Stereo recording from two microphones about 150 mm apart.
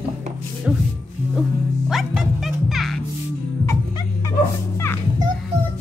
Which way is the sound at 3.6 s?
20° left (ahead or behind).